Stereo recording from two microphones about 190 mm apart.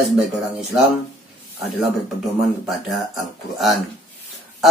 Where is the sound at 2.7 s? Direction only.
Centre (ahead or behind).